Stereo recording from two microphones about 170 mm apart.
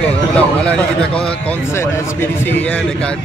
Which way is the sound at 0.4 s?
5° left (ahead or behind).